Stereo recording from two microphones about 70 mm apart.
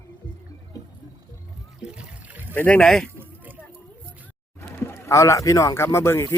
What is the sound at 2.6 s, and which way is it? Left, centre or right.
Speech, left.